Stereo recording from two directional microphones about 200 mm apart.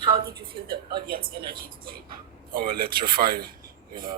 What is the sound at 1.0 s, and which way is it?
Speech, 50° right (ahead or behind).